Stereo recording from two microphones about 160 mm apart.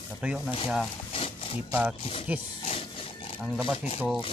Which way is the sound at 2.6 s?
40° left (ahead or behind).